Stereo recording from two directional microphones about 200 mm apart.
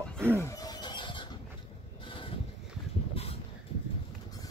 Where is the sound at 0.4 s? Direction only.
15° left (ahead or behind).